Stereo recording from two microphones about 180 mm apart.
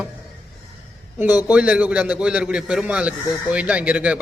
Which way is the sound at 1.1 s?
10° right (ahead or behind).